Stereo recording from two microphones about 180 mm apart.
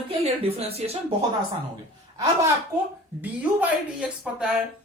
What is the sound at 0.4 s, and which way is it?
Speech, 35° right (ahead or behind).